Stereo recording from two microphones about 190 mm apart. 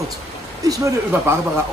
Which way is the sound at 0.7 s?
15° right (ahead or behind).